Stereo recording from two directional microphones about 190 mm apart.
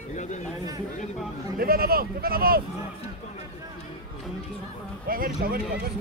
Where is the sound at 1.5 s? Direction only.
50° right (ahead or behind).